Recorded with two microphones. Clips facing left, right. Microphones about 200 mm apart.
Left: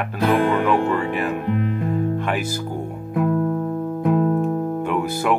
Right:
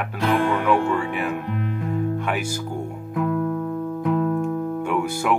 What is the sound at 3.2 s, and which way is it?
Music, 35° left (ahead or behind).